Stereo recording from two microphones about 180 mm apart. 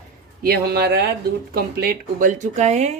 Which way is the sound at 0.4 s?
60° right (ahead or behind).